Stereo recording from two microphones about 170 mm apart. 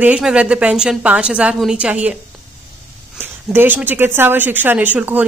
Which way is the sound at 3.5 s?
10° right (ahead or behind).